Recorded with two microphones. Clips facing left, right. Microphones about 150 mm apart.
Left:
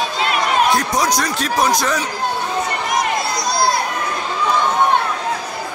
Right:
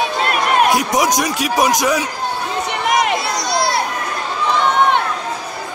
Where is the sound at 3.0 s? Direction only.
75° right (ahead or behind).